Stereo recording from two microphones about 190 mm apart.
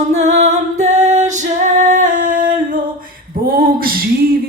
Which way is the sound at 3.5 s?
50° right (ahead or behind).